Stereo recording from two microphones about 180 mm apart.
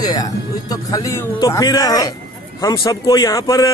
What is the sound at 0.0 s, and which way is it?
A man's voice, 20° left (ahead or behind).